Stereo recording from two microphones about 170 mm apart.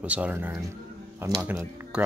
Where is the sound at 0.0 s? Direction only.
10° right (ahead or behind).